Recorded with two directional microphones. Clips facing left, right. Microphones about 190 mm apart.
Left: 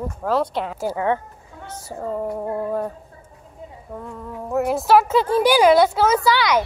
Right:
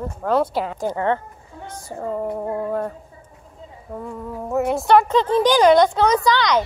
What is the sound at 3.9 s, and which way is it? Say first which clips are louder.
Speech: right 3 dB; 5° right (ahead or behind).